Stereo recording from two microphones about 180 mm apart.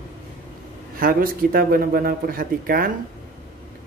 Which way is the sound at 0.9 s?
55° right (ahead or behind).